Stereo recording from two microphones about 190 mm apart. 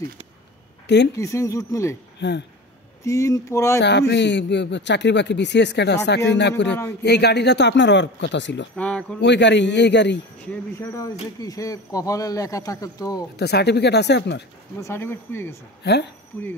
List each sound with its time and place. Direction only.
0.8 s speech: 65° left (ahead or behind)
1.1 s a man's voice: 15° left (ahead or behind)
2.1 s speech: 65° left (ahead or behind)
3.0 s a man's voice: 15° left (ahead or behind)
4.1 s a man's voice: 65° left (ahead or behind)
8.7 s a man's voice: 5° left (ahead or behind)
9.2 s a man's voice: 65° left (ahead or behind)
10.4 s a man's voice: 10° left (ahead or behind)
13.4 s a man's voice: 60° left (ahead or behind)
14.8 s a man's voice: 15° left (ahead or behind)
15.8 s a man's voice: 60° left (ahead or behind)
16.3 s a man's voice: 15° left (ahead or behind)